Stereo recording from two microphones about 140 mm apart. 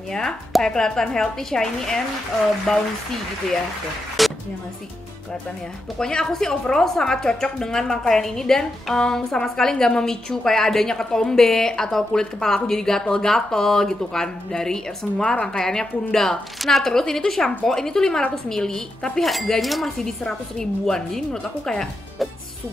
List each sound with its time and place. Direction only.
0.1 s a woman's voice: 5° left (ahead or behind)
4.2 s music: centre (ahead or behind)
5.9 s a woman's voice: 5° left (ahead or behind)